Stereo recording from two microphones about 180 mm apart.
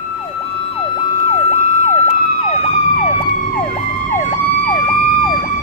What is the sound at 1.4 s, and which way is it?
Emergency vehicle, 35° left (ahead or behind).